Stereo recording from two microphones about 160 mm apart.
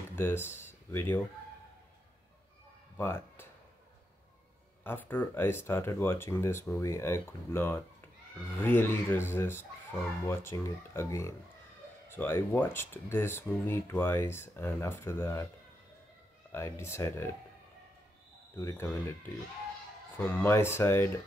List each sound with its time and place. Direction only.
0.1 s speech: 15° left (ahead or behind)
3.0 s speech: 15° left (ahead or behind)
4.8 s speech: 10° left (ahead or behind)
16.5 s speech: 15° left (ahead or behind)
18.6 s speech: 20° left (ahead or behind)